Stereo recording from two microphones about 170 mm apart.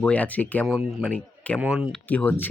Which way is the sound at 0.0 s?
10° left (ahead or behind).